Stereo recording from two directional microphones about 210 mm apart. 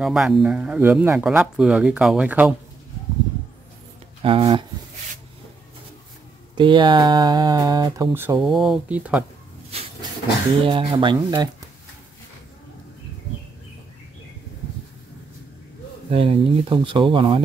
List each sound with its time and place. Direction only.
0.0 s speech: centre (ahead or behind)
4.2 s speech: 25° right (ahead or behind)
6.5 s speech: 20° right (ahead or behind); by 9.2 s 5° right (ahead or behind)
9.7 s a sound: 30° right (ahead or behind)
10.6 s speech: 25° right (ahead or behind)
16.1 s speech: 25° right (ahead or behind)